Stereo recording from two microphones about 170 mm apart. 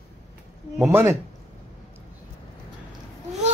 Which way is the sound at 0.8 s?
15° right (ahead or behind).